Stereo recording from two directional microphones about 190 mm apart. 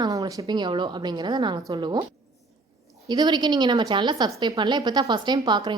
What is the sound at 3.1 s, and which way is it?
A woman's voice, 20° right (ahead or behind).